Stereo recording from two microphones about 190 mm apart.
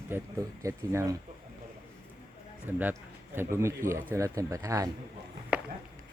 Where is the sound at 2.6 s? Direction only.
10° right (ahead or behind).